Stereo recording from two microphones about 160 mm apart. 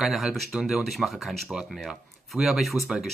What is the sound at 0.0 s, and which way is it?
Speech, centre (ahead or behind).